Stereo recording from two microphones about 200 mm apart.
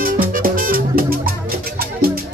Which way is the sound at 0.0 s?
45° right (ahead or behind).